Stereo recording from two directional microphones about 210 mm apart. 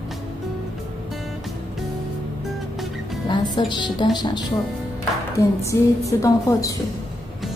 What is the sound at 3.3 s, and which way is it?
A woman's voice, 20° left (ahead or behind).